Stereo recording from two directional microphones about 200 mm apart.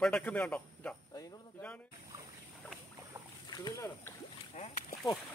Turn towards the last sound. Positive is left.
turn(degrees=35)  # may be behind; listen again after turning